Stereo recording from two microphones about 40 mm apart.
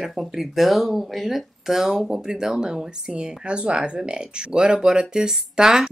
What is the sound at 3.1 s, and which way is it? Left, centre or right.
Speech, right.